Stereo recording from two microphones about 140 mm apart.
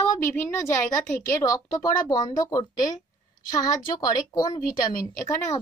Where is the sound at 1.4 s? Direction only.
25° left (ahead or behind).